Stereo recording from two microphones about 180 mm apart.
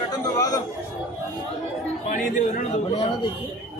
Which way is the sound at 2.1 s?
40° left (ahead or behind).